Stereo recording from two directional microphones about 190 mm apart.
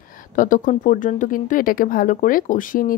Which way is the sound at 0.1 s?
45° left (ahead or behind).